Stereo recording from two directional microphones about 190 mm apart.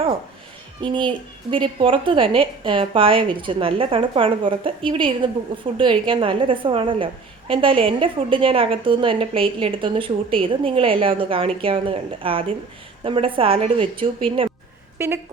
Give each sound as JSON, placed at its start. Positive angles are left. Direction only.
{"t": 0.8, "sound": "a woman's voice", "side_deg": -25}
{"t": 14.9, "sound": "speech", "side_deg": -10}